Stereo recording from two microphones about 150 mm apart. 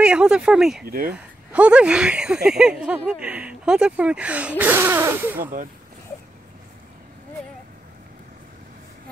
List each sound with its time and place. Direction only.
0.0 s speech: 5° right (ahead or behind)
0.8 s speech: 80° right
1.1 s speech: 10° right (ahead or behind)